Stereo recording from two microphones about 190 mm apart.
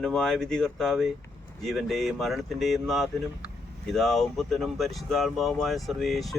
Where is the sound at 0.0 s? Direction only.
5° left (ahead or behind).